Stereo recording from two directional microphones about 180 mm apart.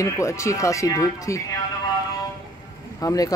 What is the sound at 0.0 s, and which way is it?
Speech, 15° left (ahead or behind).